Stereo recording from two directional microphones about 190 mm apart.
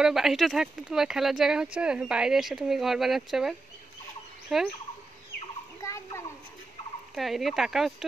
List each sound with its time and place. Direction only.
0.0 s speech: centre (ahead or behind)
5.8 s a sound: 15° left (ahead or behind)
7.2 s speech: centre (ahead or behind)